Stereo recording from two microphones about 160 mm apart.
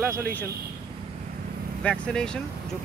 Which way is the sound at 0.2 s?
10° left (ahead or behind).